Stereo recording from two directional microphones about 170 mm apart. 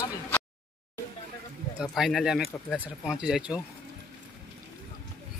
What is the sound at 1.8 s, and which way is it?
Speech, centre (ahead or behind).